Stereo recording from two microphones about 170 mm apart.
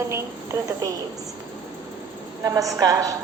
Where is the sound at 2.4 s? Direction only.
20° right (ahead or behind).